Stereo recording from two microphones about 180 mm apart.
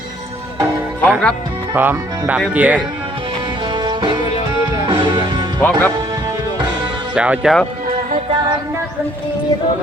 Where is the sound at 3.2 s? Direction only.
25° right (ahead or behind).